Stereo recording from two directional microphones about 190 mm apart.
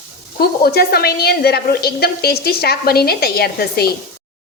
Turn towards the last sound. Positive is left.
turn(degrees=55)  # may be behind; listen again after turning